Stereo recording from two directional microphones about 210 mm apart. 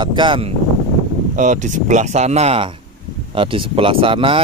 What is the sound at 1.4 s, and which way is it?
Speech, 35° right (ahead or behind).